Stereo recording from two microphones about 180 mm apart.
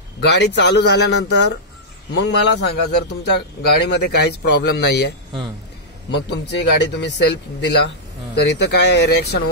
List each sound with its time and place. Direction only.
0.2 s speech: 75° left (ahead or behind)
6.1 s speech: 75° left (ahead or behind)